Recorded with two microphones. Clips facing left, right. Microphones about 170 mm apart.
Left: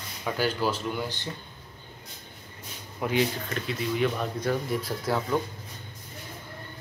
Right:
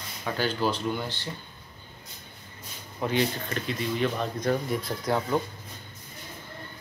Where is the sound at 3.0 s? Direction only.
5° left (ahead or behind).